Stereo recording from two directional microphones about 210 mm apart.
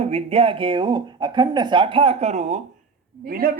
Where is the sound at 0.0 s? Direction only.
30° right (ahead or behind).